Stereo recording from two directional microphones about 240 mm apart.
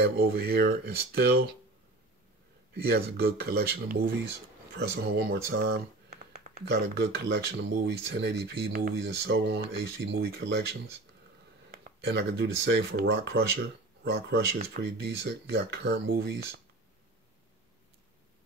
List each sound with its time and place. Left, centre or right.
0.0 s speech: right
2.9 s speech: right